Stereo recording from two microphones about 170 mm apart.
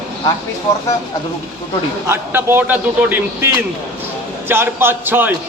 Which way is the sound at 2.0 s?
15° right (ahead or behind).